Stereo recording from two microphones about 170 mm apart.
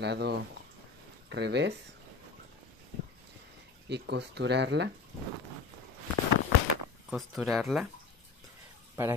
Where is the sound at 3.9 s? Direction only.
85° right.